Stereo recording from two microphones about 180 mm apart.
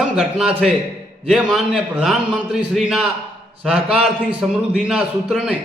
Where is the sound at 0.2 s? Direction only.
5° right (ahead or behind).